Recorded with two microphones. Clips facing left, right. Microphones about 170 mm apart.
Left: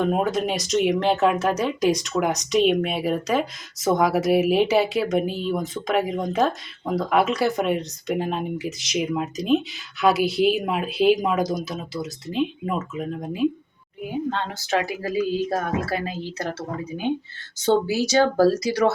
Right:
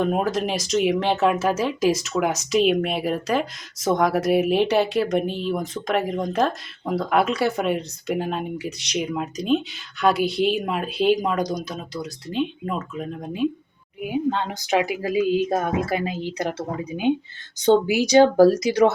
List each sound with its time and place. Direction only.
0.0 s speech: centre (ahead or behind)
14.0 s speech: 10° right (ahead or behind)